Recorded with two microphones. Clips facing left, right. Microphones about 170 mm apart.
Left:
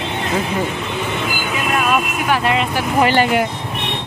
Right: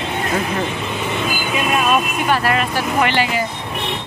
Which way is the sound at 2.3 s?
20° left (ahead or behind).